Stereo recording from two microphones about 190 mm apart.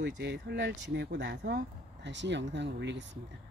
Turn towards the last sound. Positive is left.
turn(degrees=-70)  # may be behind; listen again after turning